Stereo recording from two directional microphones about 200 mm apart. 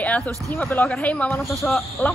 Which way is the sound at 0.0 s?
10° left (ahead or behind).